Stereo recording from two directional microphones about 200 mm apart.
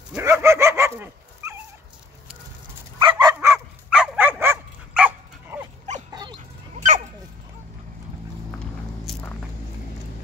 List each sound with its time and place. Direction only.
0.1 s dog: 15° right (ahead or behind)
3.0 s bow-wow: 20° right (ahead or behind)
3.3 s dog: 10° right (ahead or behind)
6.1 s dog: 20° right (ahead or behind)